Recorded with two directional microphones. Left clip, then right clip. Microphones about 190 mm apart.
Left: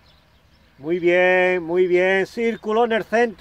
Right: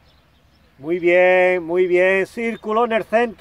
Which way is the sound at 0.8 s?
Centre (ahead or behind).